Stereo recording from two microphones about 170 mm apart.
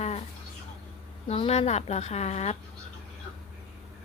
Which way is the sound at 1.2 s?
35° left (ahead or behind).